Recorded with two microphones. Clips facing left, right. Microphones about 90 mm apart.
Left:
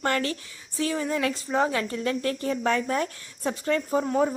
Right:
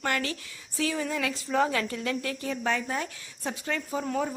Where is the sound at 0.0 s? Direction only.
40° left (ahead or behind).